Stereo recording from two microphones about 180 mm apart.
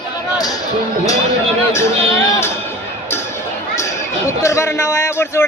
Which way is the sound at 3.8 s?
15° left (ahead or behind).